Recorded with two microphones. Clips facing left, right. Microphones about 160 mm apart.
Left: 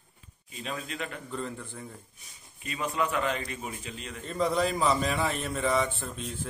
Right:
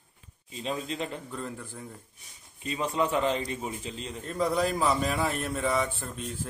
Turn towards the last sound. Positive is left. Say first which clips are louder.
# even
turn(degrees=0)  # may be behind; listen again after turning